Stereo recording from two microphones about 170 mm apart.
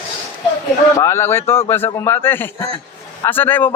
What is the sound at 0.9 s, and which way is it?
A man's voice, 15° left (ahead or behind).